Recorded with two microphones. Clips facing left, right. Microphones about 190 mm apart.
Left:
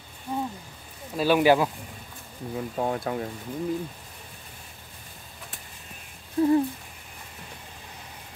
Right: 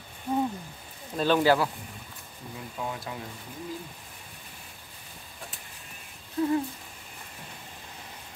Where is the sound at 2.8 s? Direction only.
50° left (ahead or behind).